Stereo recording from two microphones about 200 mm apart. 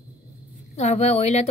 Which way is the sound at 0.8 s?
35° left (ahead or behind).